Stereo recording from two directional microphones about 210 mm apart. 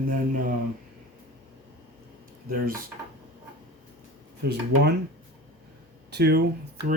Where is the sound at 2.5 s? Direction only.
45° right (ahead or behind).